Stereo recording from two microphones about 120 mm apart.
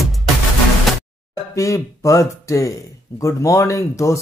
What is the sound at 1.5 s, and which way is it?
Speech, 25° left (ahead or behind).